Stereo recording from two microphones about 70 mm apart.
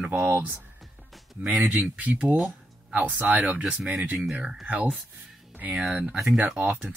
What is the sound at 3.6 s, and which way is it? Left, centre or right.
Speech, centre.